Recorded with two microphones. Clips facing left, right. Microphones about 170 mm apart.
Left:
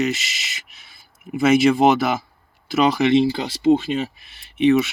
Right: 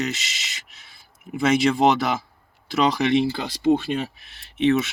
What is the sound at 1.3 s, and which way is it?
Speech, 5° left (ahead or behind).